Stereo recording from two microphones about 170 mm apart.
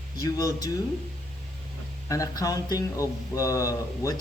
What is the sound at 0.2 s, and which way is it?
Speech, 20° left (ahead or behind).